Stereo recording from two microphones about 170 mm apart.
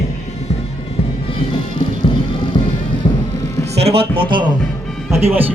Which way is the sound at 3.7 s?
35° right (ahead or behind).